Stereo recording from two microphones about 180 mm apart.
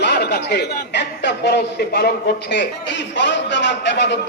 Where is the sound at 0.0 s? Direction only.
70° left (ahead or behind).